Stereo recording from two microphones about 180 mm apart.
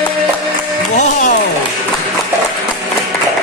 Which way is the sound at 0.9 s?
45° left (ahead or behind).